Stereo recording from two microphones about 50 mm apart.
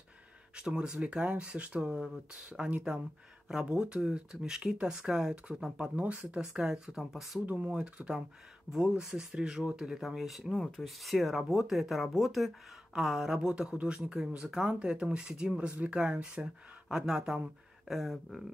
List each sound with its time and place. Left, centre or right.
0.6 s speech: centre
3.7 s speech: centre
5.9 s speech: right
6.4 s speech: centre
7.4 s speech: right
8.7 s speech: centre
13.3 s speech: centre